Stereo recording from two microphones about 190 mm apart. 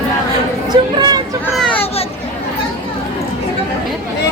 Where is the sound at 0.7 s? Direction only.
20° right (ahead or behind).